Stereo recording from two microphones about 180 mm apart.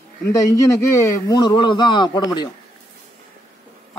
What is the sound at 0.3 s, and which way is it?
A man's voice, 15° left (ahead or behind).